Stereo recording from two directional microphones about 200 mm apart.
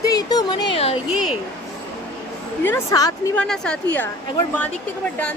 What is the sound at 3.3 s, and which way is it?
Speech, 5° left (ahead or behind).